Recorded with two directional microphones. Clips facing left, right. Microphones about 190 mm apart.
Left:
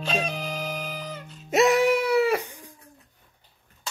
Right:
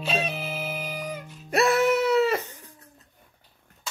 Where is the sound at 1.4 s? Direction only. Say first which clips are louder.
Left 2 dB; 20° left (ahead or behind).